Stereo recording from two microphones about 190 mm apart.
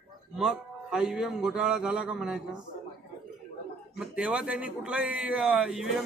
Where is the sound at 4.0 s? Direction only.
5° right (ahead or behind).